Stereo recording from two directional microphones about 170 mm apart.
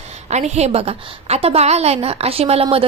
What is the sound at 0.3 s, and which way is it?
A woman's voice, 40° right (ahead or behind).